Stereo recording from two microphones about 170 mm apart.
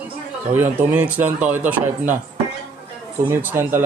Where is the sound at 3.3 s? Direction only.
10° right (ahead or behind).